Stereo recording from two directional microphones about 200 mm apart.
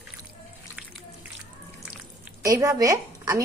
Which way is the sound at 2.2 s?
15° right (ahead or behind).